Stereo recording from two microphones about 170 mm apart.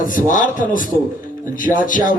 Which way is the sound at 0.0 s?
50° left (ahead or behind).